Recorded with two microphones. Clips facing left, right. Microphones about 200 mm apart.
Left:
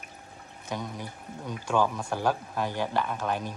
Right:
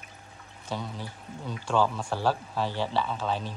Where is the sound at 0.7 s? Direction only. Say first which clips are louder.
Even; 15° left (ahead or behind).